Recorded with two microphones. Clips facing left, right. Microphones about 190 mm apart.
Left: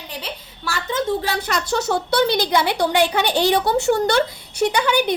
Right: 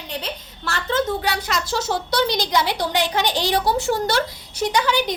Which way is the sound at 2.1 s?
55° left (ahead or behind).